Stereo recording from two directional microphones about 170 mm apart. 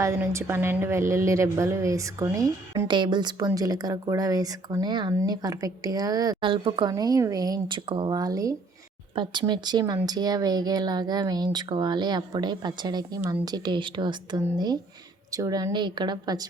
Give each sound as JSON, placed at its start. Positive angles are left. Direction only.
{"t": 0.0, "sound": "a woman's voice", "side_deg": -15}